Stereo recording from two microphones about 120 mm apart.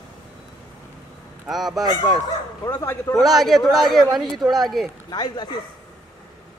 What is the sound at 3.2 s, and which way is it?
Speech, centre (ahead or behind).